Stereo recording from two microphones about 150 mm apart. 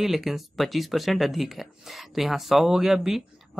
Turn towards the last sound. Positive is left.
turn(degrees=-5)  # may be behind; listen again after turning